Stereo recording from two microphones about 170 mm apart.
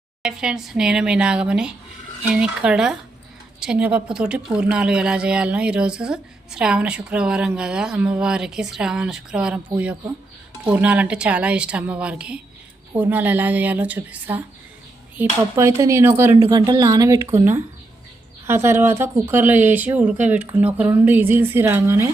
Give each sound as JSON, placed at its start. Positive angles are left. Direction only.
{"t": 0.2, "sound": "a woman's voice", "side_deg": -5}
{"t": 10.6, "sound": "a woman's voice", "side_deg": -10}
{"t": 18.4, "sound": "speech", "side_deg": -15}